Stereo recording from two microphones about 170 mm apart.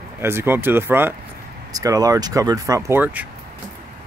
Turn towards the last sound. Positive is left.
turn(degrees=-15)  # may be behind; listen again after turning